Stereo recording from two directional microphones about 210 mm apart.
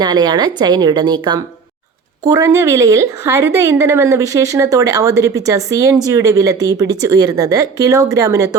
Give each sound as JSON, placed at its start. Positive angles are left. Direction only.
{"t": 0.0, "sound": "a woman's voice", "side_deg": -20}